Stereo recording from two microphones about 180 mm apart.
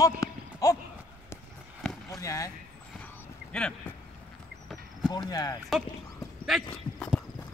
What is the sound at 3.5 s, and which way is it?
Speech, 5° left (ahead or behind).